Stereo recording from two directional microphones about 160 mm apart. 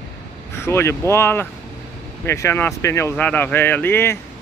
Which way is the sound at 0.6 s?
15° left (ahead or behind).